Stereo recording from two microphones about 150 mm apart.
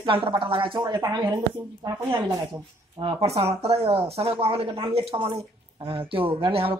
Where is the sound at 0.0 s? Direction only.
35° right (ahead or behind).